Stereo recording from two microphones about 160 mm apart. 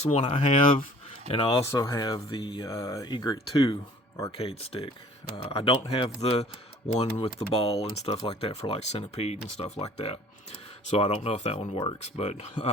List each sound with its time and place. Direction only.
0.0 s speech: 40° left (ahead or behind); by 2.1 s 20° left (ahead or behind)
2.1 s speech: 35° left (ahead or behind)
2.6 s speech: 20° left (ahead or behind)
4.3 s speech: 35° left (ahead or behind)